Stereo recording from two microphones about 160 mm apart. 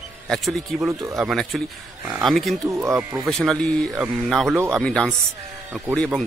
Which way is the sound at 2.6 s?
20° right (ahead or behind).